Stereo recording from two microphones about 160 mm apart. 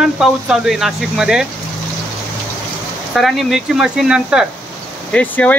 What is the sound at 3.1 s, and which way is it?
Speech, centre (ahead or behind).